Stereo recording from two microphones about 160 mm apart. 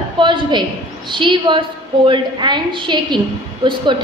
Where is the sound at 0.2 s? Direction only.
30° right (ahead or behind).